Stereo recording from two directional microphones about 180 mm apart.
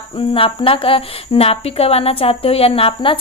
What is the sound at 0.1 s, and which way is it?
A woman's voice, 30° left (ahead or behind).